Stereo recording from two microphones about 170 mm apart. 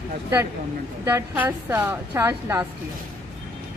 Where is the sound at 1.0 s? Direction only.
10° right (ahead or behind).